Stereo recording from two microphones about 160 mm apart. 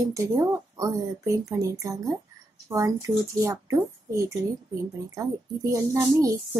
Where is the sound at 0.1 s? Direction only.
20° right (ahead or behind).